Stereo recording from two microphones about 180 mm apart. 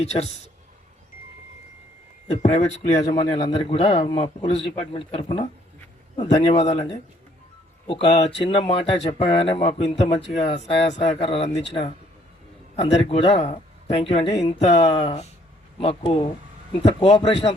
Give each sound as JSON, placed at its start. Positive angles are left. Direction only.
{"t": 0.0, "sound": "a man's voice", "side_deg": 35}
{"t": 2.2, "sound": "a man's voice", "side_deg": 40}
{"t": 7.9, "sound": "a man's voice", "side_deg": 30}